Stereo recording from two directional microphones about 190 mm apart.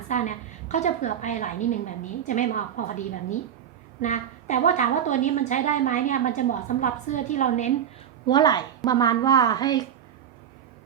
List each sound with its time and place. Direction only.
0.1 s a woman's voice: 40° left (ahead or behind)
8.3 s a woman's voice: 20° left (ahead or behind)